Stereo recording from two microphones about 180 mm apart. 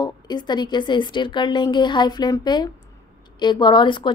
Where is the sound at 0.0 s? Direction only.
25° left (ahead or behind).